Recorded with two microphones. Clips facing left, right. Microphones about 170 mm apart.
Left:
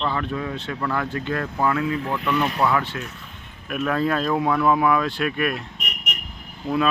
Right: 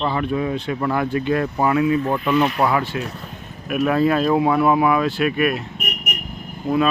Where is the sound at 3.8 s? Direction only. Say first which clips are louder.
Right 5 dB; 10° right (ahead or behind).